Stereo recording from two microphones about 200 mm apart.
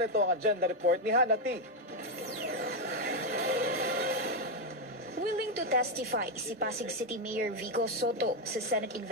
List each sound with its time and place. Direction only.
0.0 s speech: 55° right (ahead or behind)
2.4 s music: 50° right (ahead or behind)
5.2 s a woman's voice: 50° right (ahead or behind)